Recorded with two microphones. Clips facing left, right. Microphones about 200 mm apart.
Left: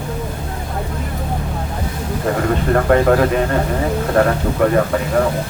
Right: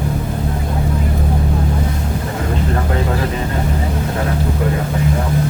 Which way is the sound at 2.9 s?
60° left (ahead or behind).